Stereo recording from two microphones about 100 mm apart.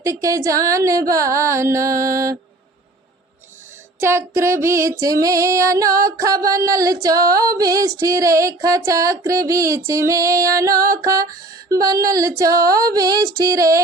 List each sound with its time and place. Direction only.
0.0 s female singing: 30° right (ahead or behind)
4.0 s female singing: 25° right (ahead or behind)